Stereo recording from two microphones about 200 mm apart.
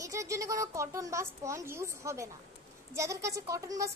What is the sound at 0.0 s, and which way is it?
A child's voice, 15° right (ahead or behind).